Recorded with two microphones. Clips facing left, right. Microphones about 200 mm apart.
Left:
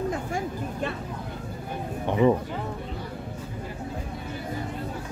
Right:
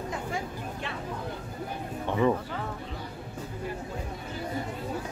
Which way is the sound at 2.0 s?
15° left (ahead or behind).